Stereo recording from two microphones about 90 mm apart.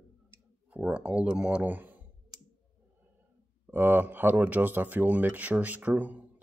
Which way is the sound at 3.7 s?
20° right (ahead or behind).